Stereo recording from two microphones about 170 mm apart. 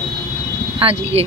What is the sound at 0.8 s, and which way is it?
Speech, 35° right (ahead or behind).